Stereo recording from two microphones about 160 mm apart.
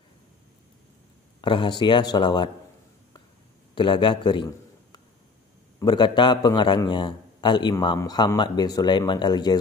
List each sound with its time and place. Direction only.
1.4 s a man's voice: 30° left (ahead or behind)
3.7 s a man's voice: 30° left (ahead or behind)